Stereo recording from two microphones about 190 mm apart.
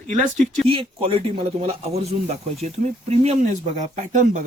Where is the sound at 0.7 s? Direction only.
30° right (ahead or behind).